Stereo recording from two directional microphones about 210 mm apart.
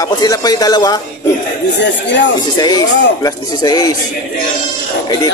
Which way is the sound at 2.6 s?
20° left (ahead or behind).